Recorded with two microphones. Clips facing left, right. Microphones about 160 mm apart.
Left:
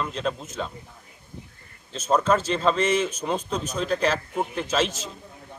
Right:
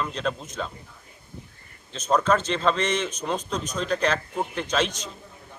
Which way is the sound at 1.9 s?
5° left (ahead or behind).